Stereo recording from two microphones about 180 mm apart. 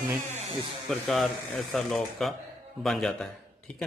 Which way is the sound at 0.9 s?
Centre (ahead or behind).